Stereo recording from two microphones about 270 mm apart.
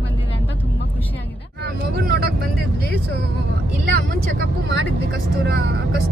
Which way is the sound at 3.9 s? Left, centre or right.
Right.